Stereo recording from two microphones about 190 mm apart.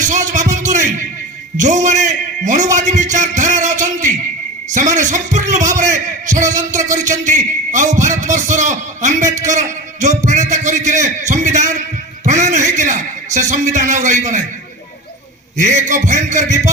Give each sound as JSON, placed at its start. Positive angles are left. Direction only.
{"t": 0.3, "sound": "a sound", "side_deg": -40}
{"t": 1.5, "sound": "a man's voice", "side_deg": -40}
{"t": 3.6, "sound": "music", "side_deg": -40}
{"t": 4.7, "sound": "a man's voice", "side_deg": -40}
{"t": 15.5, "sound": "a man's voice", "side_deg": -40}